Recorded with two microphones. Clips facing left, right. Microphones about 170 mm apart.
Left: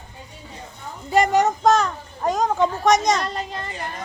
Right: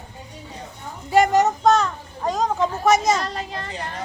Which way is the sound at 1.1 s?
Centre (ahead or behind).